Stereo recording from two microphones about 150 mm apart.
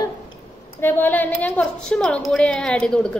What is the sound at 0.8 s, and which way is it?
A woman's voice, 15° left (ahead or behind).